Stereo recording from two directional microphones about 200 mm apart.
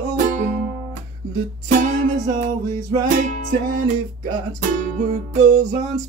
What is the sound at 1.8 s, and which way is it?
Music, 40° right (ahead or behind).